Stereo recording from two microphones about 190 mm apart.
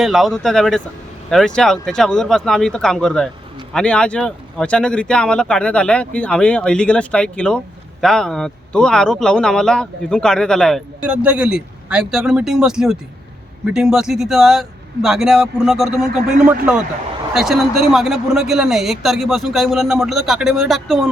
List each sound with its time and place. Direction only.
0.0 s speech: centre (ahead or behind)